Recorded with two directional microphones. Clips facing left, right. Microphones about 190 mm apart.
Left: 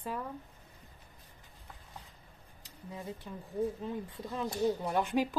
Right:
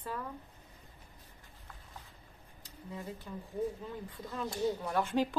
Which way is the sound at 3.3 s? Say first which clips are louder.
Even; 20° left (ahead or behind).